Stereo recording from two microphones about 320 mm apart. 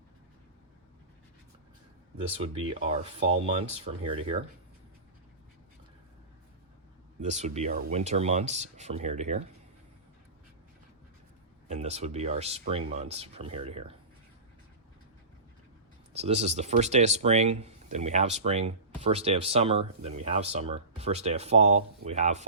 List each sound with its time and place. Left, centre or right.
2.2 s speech: centre
7.2 s speech: right
11.7 s speech: centre
16.1 s speech: centre